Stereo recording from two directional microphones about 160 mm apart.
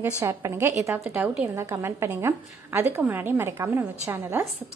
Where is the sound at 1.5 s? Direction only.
20° right (ahead or behind).